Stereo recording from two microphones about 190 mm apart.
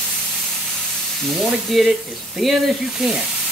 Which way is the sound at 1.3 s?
Centre (ahead or behind).